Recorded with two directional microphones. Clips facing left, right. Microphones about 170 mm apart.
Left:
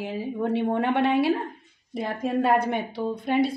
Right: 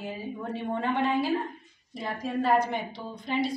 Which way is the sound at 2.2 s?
60° left (ahead or behind).